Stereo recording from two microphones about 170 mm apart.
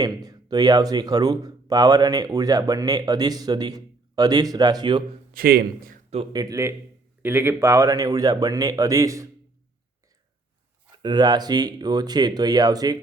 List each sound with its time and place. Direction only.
0.0 s speech: 20° right (ahead or behind)
5.3 s speech: 60° right (ahead or behind)
6.3 s speech: 20° right (ahead or behind)
11.0 s speech: 25° right (ahead or behind)